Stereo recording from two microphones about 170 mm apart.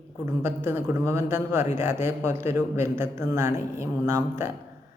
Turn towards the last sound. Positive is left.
turn(degrees=-15)  # may be behind; listen again after turning